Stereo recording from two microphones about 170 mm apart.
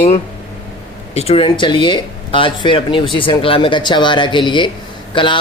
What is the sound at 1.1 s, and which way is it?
Speech, 35° left (ahead or behind).